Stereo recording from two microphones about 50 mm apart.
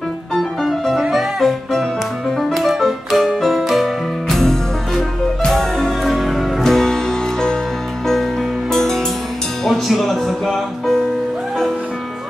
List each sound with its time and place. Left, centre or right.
0.3 s music: centre
8.7 s music: centre